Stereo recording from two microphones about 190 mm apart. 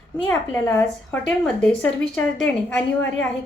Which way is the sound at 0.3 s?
10° left (ahead or behind).